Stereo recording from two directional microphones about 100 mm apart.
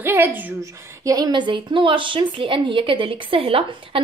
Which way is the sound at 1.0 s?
40° right (ahead or behind).